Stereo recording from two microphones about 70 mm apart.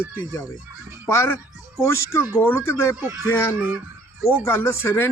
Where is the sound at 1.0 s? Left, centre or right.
Left.